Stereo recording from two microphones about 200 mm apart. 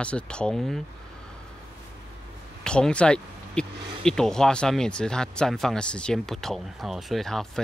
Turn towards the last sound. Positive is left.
turn(degrees=0)  # may be behind; listen again after turning